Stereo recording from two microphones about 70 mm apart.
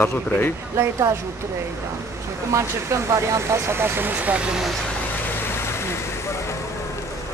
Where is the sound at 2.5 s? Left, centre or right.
Right; by 4.6 s centre.